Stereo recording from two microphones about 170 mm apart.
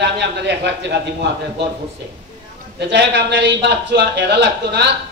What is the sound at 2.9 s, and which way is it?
A man's voice, 90° right.